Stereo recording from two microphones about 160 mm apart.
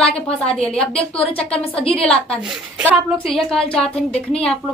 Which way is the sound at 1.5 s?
35° left (ahead or behind).